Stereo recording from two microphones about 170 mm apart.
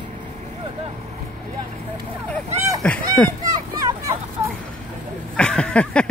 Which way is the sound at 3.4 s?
20° right (ahead or behind).